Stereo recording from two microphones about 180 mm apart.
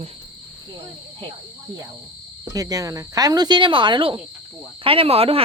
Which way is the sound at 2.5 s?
20° right (ahead or behind).